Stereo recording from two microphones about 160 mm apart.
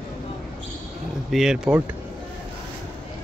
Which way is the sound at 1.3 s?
5° right (ahead or behind).